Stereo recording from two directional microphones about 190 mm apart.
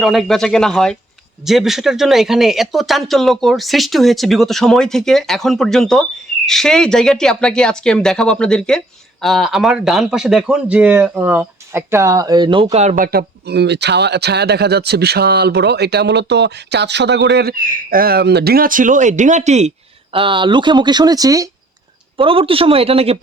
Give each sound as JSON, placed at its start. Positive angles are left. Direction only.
{"t": 0.0, "sound": "a man's voice", "side_deg": 0}
{"t": 13.1, "sound": "speech", "side_deg": -55}
{"t": 20.1, "sound": "speech", "side_deg": -25}
{"t": 22.2, "sound": "speech", "side_deg": -30}